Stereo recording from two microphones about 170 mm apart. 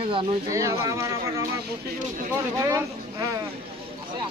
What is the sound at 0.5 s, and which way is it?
Speech, 20° right (ahead or behind).